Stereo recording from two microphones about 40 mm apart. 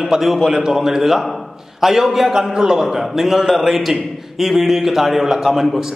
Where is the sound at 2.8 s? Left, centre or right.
Centre.